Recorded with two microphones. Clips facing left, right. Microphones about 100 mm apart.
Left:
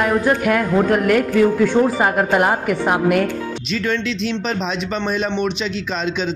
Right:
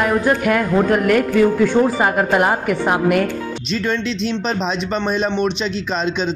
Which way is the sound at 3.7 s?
30° right (ahead or behind).